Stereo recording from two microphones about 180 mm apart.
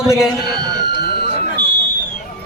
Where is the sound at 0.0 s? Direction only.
Centre (ahead or behind).